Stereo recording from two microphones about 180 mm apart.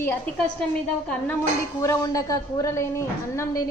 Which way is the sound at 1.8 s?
20° left (ahead or behind).